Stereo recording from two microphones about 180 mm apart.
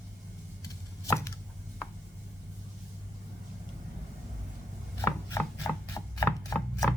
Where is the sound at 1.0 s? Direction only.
15° left (ahead or behind).